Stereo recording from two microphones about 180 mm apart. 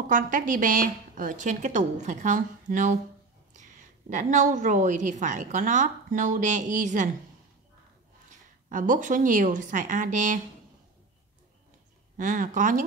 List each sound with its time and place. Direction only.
0.1 s a woman's voice: 45° right (ahead or behind)
8.6 s a woman's voice: 45° right (ahead or behind)
12.2 s a woman's voice: 50° right (ahead or behind)